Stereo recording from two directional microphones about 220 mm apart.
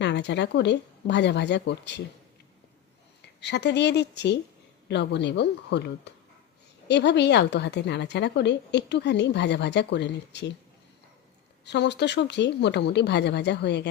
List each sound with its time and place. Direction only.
0.0 s a woman's voice: 50° left (ahead or behind)
3.4 s a woman's voice: 50° left (ahead or behind)
11.6 s a woman's voice: 50° left (ahead or behind)